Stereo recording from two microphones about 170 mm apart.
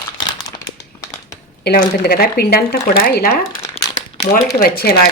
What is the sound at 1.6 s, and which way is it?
Speech, 75° left (ahead or behind).